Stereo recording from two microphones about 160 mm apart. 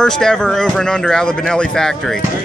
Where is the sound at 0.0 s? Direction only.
5° left (ahead or behind).